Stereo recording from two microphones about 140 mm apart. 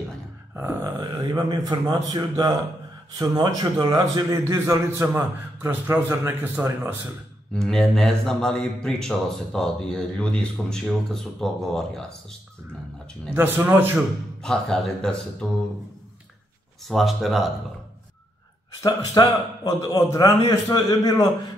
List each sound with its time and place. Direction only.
0.6 s a man's voice: 20° right (ahead or behind)
7.5 s speech: centre (ahead or behind)
13.3 s speech: 15° right (ahead or behind)
14.4 s speech: 5° left (ahead or behind)
16.8 s speech: centre (ahead or behind)
18.8 s a man's voice: 30° left (ahead or behind)